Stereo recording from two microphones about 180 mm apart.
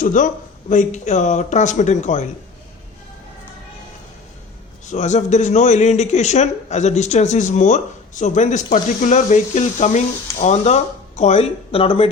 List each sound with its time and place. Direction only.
0.0 s speech: 45° left (ahead or behind)
4.9 s speech: 40° left (ahead or behind)